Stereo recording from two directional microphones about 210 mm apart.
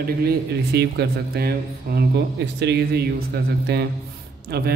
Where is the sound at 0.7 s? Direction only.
50° right (ahead or behind).